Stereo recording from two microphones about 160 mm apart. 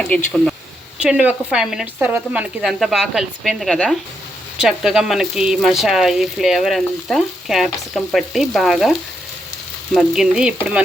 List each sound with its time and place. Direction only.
0.0 s speech: 5° left (ahead or behind)
0.9 s speech: 10° right (ahead or behind)
10.6 s stir: 10° right (ahead or behind)